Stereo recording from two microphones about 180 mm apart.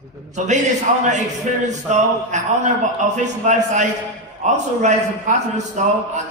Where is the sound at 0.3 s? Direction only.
40° right (ahead or behind).